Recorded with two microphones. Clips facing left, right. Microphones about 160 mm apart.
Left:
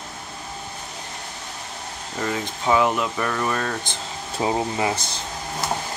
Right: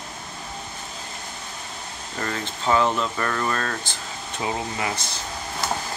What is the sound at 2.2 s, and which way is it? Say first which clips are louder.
Speech: left 3 dB; 10° left (ahead or behind).